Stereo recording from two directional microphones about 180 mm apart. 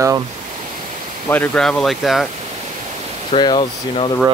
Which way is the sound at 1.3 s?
10° left (ahead or behind).